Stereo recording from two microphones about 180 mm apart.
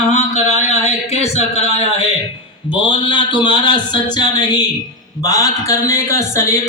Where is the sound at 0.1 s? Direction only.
40° left (ahead or behind).